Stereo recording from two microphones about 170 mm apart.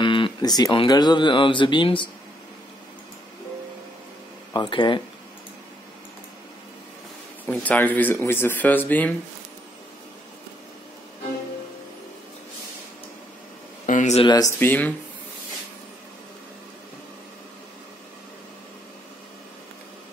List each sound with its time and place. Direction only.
0.0 s a sound: 30° left (ahead or behind)
0.7 s speech: 25° left (ahead or behind)
4.6 s speech: 30° left (ahead or behind)
7.4 s speech: 10° left (ahead or behind)
13.8 s speech: 45° left (ahead or behind)
14.2 s speech: 25° left (ahead or behind)
14.6 s speech: 10° left (ahead or behind)